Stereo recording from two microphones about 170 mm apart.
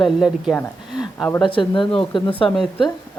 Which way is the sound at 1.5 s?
30° left (ahead or behind).